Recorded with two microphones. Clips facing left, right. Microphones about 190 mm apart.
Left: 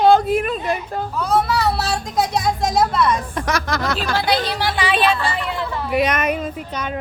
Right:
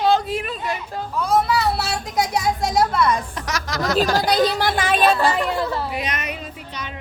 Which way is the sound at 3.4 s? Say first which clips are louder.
Left 4 dB; 55° left (ahead or behind).